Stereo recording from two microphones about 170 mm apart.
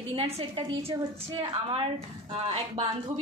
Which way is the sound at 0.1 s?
30° right (ahead or behind).